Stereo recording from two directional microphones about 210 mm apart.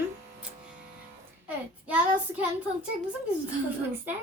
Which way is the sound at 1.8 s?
5° right (ahead or behind).